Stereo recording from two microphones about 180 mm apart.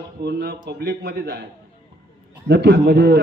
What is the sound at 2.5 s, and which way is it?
Speech, 70° right (ahead or behind).